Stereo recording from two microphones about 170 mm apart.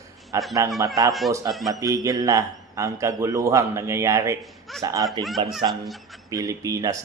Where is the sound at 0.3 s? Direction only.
15° right (ahead or behind).